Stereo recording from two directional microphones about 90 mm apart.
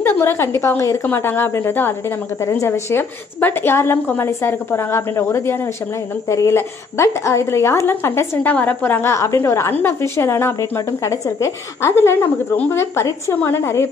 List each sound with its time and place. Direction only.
0.0 s a woman's voice: 25° left (ahead or behind)
11.9 s a woman's voice: 25° left (ahead or behind)